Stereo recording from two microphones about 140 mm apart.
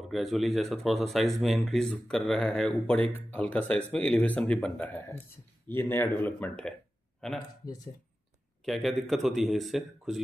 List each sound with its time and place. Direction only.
0.1 s speech: centre (ahead or behind)
7.6 s speech: 25° left (ahead or behind)
8.6 s speech: centre (ahead or behind)